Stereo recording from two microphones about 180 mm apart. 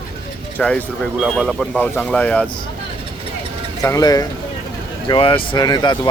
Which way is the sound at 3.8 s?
20° left (ahead or behind).